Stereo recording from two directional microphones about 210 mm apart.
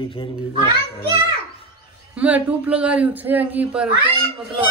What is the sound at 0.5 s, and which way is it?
Speech, 45° left (ahead or behind).